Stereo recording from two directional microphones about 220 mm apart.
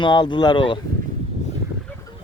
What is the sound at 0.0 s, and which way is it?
Speech, 20° left (ahead or behind).